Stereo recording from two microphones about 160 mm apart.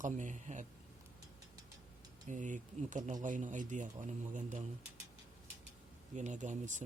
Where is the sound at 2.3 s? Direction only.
50° right (ahead or behind).